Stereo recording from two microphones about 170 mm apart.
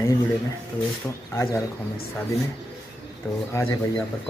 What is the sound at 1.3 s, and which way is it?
Speech, 15° left (ahead or behind).